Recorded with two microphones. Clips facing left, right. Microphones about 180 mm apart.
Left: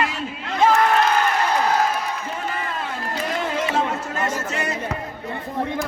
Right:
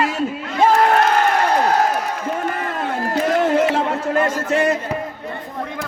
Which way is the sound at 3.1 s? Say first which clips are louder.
Right 9 dB; 60° right (ahead or behind).